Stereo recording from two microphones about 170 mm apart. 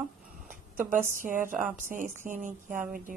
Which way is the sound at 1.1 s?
50° right (ahead or behind).